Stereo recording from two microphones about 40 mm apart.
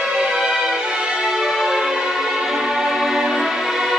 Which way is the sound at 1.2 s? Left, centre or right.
Centre.